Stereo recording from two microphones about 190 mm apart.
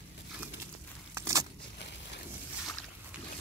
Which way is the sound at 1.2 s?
15° right (ahead or behind).